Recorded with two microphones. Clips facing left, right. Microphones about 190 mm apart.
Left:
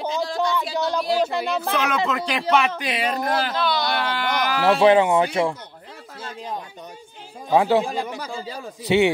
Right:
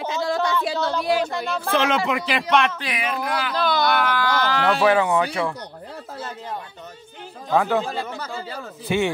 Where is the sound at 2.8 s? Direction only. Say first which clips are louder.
Left 2 dB; 30° left (ahead or behind); by 3.5 s 45° left (ahead or behind).